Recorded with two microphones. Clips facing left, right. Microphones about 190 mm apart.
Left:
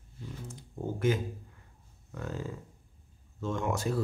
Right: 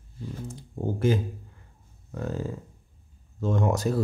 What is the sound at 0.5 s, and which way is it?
Speech, 30° right (ahead or behind).